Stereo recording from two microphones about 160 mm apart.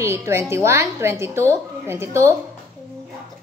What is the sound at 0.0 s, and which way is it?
A woman's voice, 15° right (ahead or behind).